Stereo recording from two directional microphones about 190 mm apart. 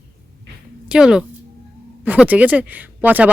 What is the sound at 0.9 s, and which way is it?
A woman's voice, 5° right (ahead or behind).